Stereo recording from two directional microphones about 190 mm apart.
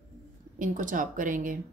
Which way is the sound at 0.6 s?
45° right (ahead or behind).